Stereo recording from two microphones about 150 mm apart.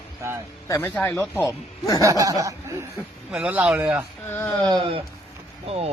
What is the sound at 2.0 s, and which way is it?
Snicker, 20° right (ahead or behind).